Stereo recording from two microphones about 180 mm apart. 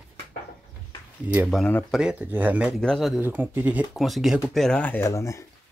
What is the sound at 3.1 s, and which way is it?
Speech, 10° right (ahead or behind).